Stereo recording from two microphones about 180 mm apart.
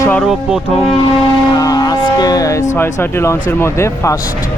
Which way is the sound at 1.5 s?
20° left (ahead or behind).